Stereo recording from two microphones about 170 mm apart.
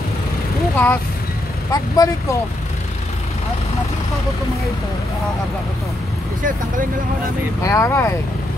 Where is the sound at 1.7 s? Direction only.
20° left (ahead or behind).